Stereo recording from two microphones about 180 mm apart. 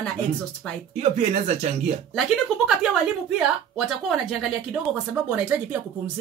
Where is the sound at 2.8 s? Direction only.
5° right (ahead or behind).